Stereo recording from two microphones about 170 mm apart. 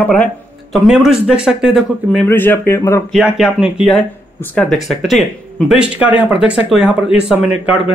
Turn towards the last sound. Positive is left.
turn(degrees=-5)  # may be behind; listen again after turning